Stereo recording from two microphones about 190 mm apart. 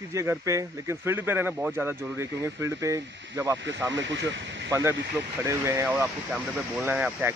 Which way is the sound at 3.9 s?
75° right (ahead or behind).